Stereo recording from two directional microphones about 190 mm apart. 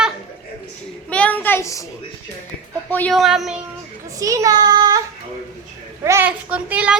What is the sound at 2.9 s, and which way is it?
Speech, 5° left (ahead or behind).